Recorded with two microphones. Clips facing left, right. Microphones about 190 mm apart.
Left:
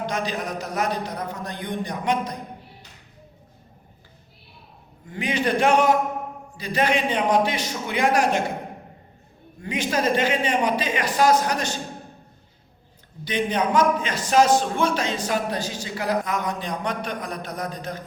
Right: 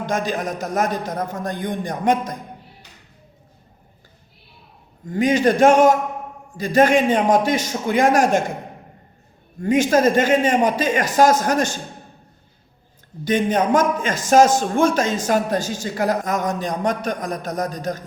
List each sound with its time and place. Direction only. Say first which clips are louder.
0.0 s a man's voice: right 4 dB; 45° right (ahead or behind)
5.0 s a man's voice: right 8 dB; 45° right (ahead or behind)
9.6 s a man's voice: right 9 dB; 45° right (ahead or behind)
13.2 s a man's voice: right 5 dB; 45° right (ahead or behind)